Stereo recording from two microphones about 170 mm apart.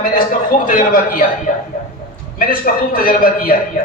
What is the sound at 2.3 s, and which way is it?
A man's voice, 55° left (ahead or behind).